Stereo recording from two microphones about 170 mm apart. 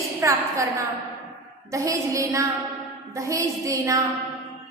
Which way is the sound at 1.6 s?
20° right (ahead or behind).